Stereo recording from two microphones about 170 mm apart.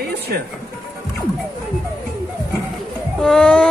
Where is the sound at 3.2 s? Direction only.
5° left (ahead or behind).